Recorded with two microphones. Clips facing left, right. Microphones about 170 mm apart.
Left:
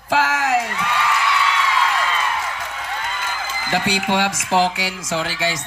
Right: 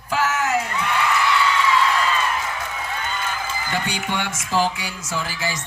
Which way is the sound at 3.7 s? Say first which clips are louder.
Left 7 dB; 90° left.